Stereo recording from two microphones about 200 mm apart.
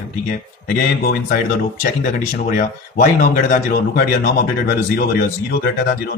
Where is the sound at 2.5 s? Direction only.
40° left (ahead or behind).